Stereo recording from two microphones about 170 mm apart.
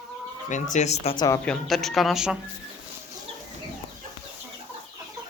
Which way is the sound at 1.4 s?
Centre (ahead or behind).